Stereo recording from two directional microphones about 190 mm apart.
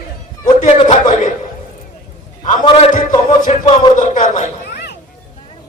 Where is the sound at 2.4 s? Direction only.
40° left (ahead or behind).